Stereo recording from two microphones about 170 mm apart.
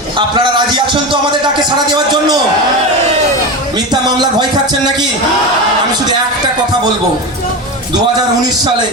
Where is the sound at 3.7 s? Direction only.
25° right (ahead or behind).